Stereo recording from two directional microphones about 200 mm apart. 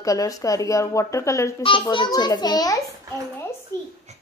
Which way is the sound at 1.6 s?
25° left (ahead or behind).